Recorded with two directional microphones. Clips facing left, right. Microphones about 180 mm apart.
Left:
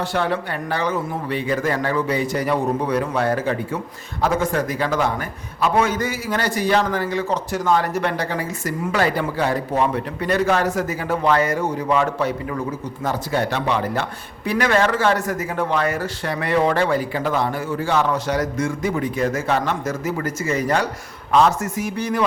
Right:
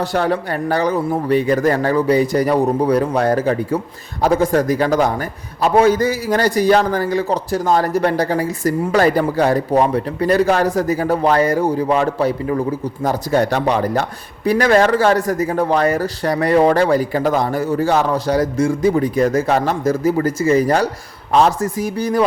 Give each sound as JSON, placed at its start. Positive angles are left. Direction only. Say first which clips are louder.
{"t": 0.1, "sound": "a man's voice", "louder": "right 4 dB", "side_deg": -40}